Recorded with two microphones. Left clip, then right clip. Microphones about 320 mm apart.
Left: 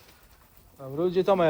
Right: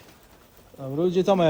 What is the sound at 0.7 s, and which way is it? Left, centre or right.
Bird, right.